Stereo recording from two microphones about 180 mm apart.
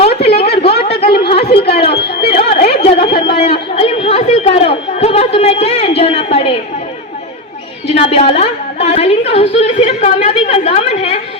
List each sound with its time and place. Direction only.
0.2 s a sound: 35° left (ahead or behind)
0.6 s chatter: 35° left (ahead or behind)
1.9 s speech: 65° left (ahead or behind)
2.2 s a woman's voice: 30° left (ahead or behind)
7.9 s a woman's voice: 35° left (ahead or behind)